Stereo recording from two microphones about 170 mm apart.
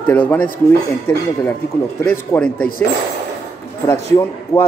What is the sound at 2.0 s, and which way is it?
Speech, 10° left (ahead or behind).